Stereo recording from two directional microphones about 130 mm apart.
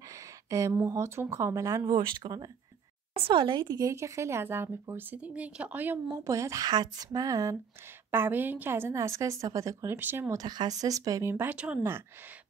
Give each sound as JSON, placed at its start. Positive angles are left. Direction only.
{"t": 0.1, "sound": "a sound", "side_deg": -25}
{"t": 0.8, "sound": "speech", "side_deg": -20}
{"t": 2.0, "sound": "speech", "side_deg": -35}
{"t": 8.1, "sound": "speech", "side_deg": -15}
{"t": 10.4, "sound": "speech", "side_deg": -30}